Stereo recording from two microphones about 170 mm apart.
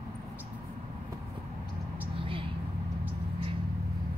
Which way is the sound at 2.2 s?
30° right (ahead or behind).